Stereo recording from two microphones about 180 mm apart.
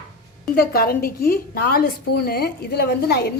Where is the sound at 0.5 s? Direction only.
55° left (ahead or behind).